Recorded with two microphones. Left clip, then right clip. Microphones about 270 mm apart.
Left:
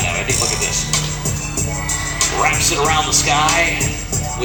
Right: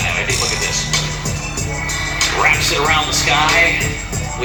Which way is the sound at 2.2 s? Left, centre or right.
Left.